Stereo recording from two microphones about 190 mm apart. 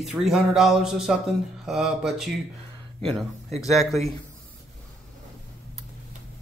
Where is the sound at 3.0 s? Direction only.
30° right (ahead or behind).